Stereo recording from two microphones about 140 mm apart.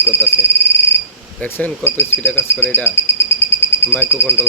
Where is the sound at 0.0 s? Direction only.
20° left (ahead or behind).